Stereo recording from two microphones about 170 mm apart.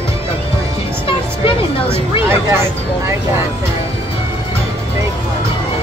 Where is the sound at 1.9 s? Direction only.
15° right (ahead or behind).